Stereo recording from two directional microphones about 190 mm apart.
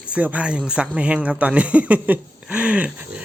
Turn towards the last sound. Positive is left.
turn(degrees=-5)  # may be behind; listen again after turning